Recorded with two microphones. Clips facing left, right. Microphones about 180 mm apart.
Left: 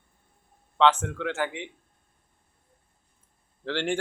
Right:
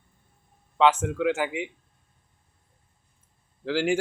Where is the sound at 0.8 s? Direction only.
10° right (ahead or behind).